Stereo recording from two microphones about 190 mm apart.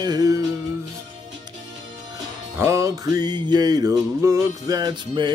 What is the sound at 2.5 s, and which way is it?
Music, 15° right (ahead or behind).